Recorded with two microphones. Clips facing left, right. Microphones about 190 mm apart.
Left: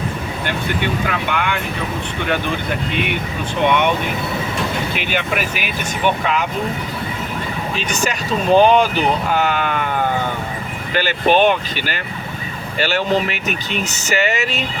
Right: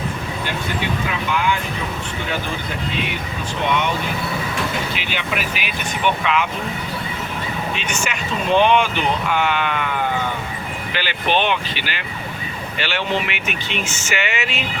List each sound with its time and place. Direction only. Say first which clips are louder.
1.3 s speech: right 4 dB; 60° left (ahead or behind)
3.6 s speech: left 5 dB; 60° left (ahead or behind)
4.9 s speech: left 4 dB; 50° left (ahead or behind)
7.8 s speech: left 4 dB; 35° left (ahead or behind)